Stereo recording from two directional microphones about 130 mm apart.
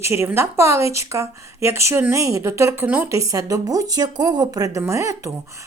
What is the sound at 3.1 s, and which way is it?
Speech, 25° right (ahead or behind).